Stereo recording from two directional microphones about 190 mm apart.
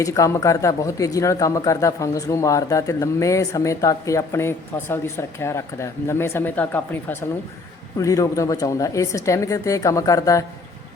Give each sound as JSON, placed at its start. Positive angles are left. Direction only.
{"t": 0.0, "sound": "speech", "side_deg": 15}